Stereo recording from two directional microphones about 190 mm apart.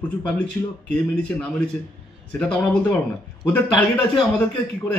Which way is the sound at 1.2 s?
5° left (ahead or behind).